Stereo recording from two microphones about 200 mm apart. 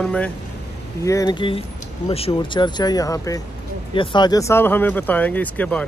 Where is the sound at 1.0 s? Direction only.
15° left (ahead or behind).